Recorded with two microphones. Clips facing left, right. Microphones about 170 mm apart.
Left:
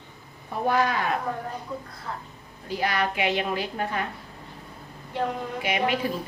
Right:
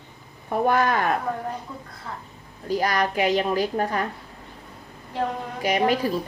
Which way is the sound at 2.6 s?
40° right (ahead or behind).